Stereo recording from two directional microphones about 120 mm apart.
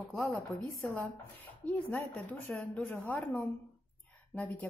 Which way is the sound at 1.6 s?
10° left (ahead or behind).